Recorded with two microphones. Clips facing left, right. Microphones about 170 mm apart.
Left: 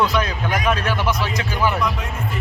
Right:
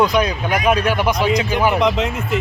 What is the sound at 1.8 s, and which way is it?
Speech, 90° right.